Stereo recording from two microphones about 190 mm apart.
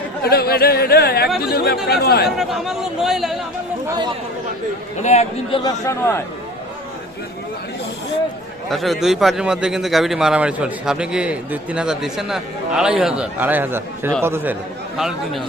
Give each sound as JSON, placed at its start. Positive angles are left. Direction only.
{"t": 0.2, "sound": "speech", "side_deg": 55}
{"t": 2.3, "sound": "a man's voice", "side_deg": 0}
{"t": 3.8, "sound": "speech", "side_deg": -20}
{"t": 5.0, "sound": "a man's voice", "side_deg": 30}
{"t": 5.8, "sound": "speech", "side_deg": 15}
{"t": 8.7, "sound": "a man's voice", "side_deg": 0}
{"t": 14.9, "sound": "a man's voice", "side_deg": 0}